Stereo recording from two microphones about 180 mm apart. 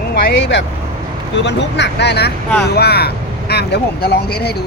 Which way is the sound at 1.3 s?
75° left (ahead or behind).